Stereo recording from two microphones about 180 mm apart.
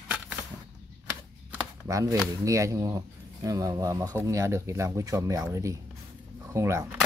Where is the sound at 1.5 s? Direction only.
15° right (ahead or behind).